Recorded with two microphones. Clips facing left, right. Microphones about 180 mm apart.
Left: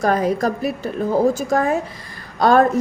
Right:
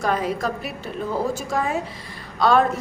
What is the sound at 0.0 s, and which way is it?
A woman's voice, 45° left (ahead or behind).